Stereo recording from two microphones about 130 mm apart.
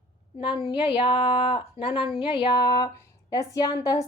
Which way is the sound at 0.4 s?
35° left (ahead or behind).